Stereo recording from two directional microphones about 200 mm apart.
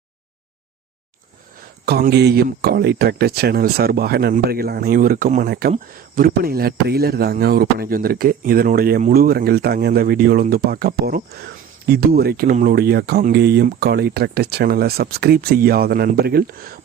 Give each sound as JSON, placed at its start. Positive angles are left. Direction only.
{"t": 1.8, "sound": "a man's voice", "side_deg": -50}